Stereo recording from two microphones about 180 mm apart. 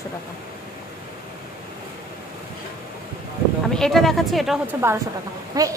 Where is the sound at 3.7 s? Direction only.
Centre (ahead or behind).